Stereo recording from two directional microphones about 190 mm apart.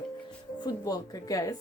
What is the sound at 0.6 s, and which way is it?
Speech, 20° left (ahead or behind).